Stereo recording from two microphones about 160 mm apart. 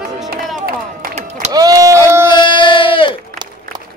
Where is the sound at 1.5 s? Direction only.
25° right (ahead or behind).